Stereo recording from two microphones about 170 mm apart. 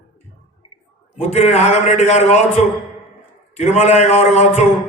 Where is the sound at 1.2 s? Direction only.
40° left (ahead or behind).